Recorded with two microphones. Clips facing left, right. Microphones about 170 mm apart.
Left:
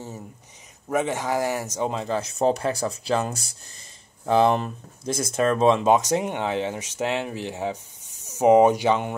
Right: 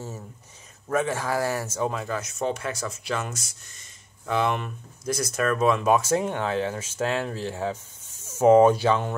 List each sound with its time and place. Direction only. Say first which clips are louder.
0.8 s speech: left 1 dB; 20° left (ahead or behind)